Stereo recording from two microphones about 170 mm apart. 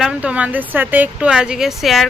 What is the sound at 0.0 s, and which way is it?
Speech, 5° right (ahead or behind).